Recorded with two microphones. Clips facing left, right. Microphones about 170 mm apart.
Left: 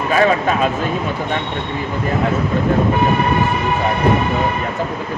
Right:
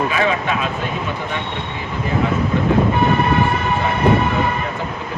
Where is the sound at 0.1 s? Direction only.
45° left (ahead or behind).